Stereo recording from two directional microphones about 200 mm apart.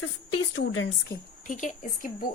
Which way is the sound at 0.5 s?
80° left.